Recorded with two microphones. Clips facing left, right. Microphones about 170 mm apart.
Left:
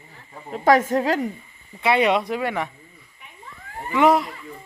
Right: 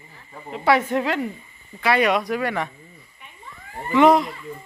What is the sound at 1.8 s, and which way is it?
Speech, 25° left (ahead or behind).